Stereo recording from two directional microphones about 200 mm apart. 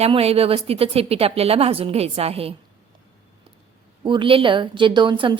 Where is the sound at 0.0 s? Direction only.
30° right (ahead or behind).